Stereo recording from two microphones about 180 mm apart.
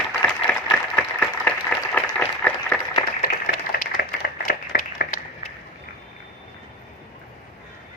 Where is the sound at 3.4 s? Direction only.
55° left (ahead or behind).